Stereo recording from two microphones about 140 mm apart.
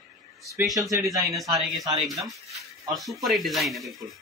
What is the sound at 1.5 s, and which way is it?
Speech, 25° right (ahead or behind).